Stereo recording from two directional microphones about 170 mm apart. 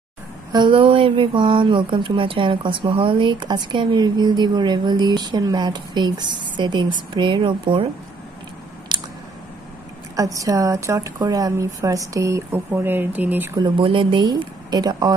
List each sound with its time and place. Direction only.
0.5 s speech: 30° right (ahead or behind)
8.9 s squish: 25° right (ahead or behind)
10.1 s speech: 20° right (ahead or behind)
13.6 s speech: 30° right (ahead or behind)